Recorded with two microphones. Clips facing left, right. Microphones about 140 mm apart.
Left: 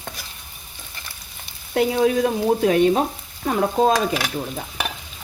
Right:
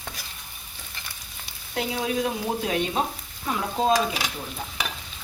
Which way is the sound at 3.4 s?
50° left (ahead or behind).